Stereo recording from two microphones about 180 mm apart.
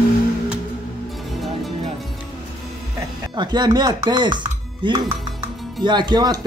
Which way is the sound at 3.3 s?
25° right (ahead or behind).